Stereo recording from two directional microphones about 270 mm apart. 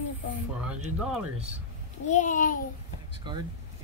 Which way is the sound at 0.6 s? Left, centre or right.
Centre.